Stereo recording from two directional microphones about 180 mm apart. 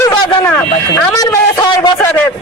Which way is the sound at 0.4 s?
15° left (ahead or behind).